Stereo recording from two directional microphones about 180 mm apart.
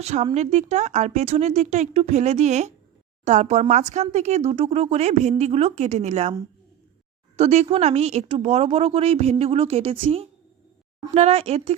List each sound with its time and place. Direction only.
0.0 s speech: 40° right (ahead or behind)
7.3 s speech: 35° right (ahead or behind)